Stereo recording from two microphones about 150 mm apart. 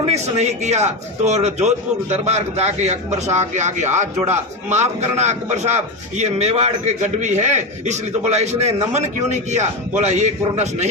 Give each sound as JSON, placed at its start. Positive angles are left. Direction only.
{"t": 0.0, "sound": "a man's voice", "side_deg": -45}